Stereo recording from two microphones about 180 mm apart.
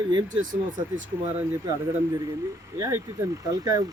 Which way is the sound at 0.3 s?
45° right (ahead or behind).